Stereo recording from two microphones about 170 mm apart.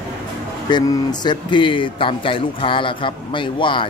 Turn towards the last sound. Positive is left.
turn(degrees=30)  # may be behind; listen again after turning